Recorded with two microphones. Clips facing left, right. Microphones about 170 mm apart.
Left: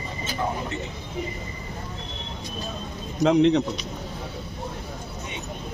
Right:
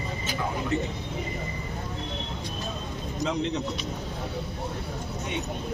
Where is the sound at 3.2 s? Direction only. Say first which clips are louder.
Left 11 dB; 70° left (ahead or behind).